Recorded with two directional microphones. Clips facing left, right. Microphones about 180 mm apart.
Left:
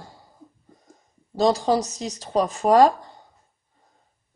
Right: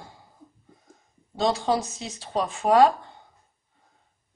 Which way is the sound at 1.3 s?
40° left (ahead or behind).